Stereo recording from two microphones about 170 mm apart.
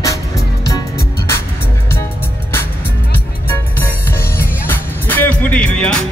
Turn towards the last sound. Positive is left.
turn(degrees=5)  # may be behind; listen again after turning